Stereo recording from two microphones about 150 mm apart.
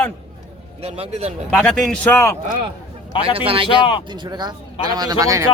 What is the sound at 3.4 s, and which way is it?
Speech, 35° right (ahead or behind).